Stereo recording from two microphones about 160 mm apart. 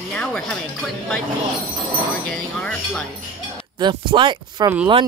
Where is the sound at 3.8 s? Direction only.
30° right (ahead or behind).